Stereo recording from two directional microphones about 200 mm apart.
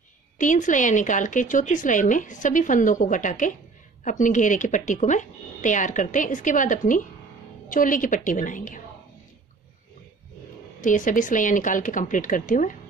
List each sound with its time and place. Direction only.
0.4 s speech: 40° left (ahead or behind)
10.8 s speech: 40° left (ahead or behind)